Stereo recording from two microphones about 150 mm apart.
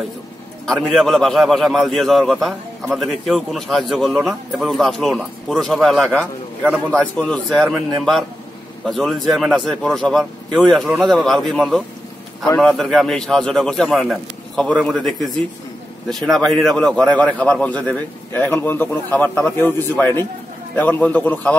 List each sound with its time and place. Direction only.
0.7 s a man's voice: centre (ahead or behind)